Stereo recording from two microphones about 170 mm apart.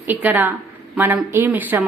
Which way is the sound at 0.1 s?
10° right (ahead or behind).